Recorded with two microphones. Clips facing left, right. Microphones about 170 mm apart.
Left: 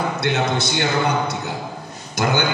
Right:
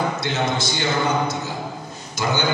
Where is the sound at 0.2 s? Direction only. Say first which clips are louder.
Left 2 dB; 60° left (ahead or behind).